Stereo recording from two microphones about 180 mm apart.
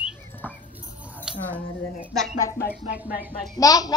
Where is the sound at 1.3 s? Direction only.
5° right (ahead or behind).